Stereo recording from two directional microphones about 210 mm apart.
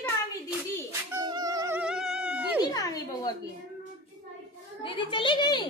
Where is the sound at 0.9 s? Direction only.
15° right (ahead or behind).